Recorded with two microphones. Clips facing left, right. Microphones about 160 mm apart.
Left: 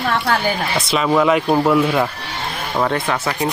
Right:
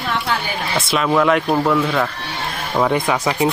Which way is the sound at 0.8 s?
Centre (ahead or behind).